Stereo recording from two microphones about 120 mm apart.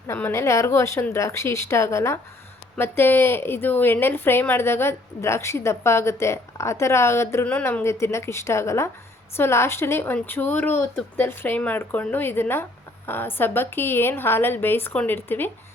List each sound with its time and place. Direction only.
0.1 s a woman's voice: 20° left (ahead or behind)